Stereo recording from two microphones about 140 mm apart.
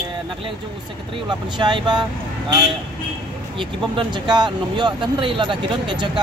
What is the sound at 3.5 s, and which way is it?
Speech, 35° right (ahead or behind).